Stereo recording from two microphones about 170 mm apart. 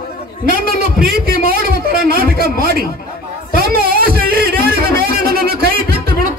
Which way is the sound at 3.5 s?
60° right (ahead or behind).